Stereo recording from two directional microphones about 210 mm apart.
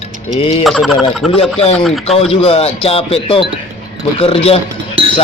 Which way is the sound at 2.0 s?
30° left (ahead or behind).